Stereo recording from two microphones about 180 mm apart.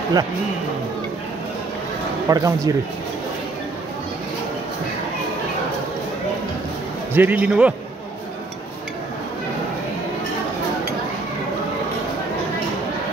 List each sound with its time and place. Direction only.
2.2 s speech: 20° right (ahead or behind)
7.2 s a man's voice: 10° right (ahead or behind)